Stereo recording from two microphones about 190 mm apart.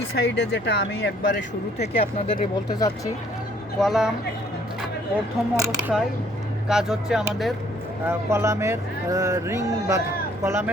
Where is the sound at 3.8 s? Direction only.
Centre (ahead or behind).